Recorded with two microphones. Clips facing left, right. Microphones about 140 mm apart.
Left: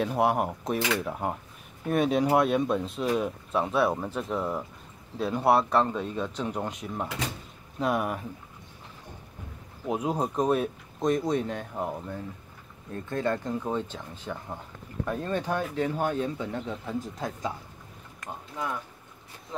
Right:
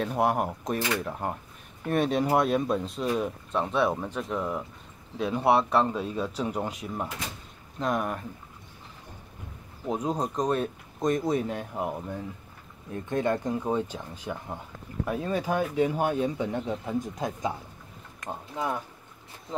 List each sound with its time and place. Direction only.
0.0 s speech: centre (ahead or behind)
9.8 s speech: 5° left (ahead or behind); by 18.8 s 25° right (ahead or behind)